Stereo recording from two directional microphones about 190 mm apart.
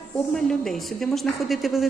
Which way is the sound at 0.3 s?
5° left (ahead or behind).